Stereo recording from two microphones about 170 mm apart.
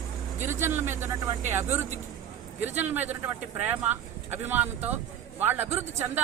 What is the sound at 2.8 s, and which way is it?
Speech, 10° right (ahead or behind).